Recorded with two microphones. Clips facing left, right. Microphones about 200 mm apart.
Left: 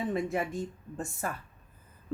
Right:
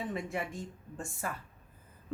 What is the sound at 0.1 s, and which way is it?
A woman's voice, 40° left (ahead or behind).